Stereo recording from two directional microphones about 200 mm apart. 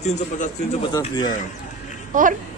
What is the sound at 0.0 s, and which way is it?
Speech, 35° left (ahead or behind).